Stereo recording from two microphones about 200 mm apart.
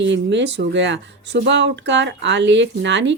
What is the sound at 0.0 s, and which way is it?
Speech, 60° right (ahead or behind).